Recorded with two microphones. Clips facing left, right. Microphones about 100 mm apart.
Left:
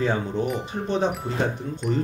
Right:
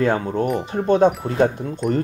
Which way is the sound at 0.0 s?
55° right (ahead or behind).